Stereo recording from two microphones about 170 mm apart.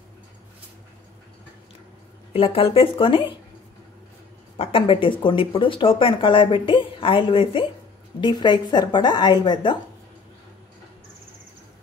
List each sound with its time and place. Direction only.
2.3 s speech: 35° left (ahead or behind)
4.6 s a woman's voice: 30° left (ahead or behind)